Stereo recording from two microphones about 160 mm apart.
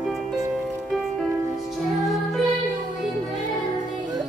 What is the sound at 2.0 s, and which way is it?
Music, centre (ahead or behind).